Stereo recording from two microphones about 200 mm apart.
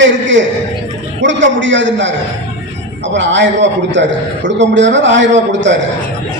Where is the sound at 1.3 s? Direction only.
65° right (ahead or behind).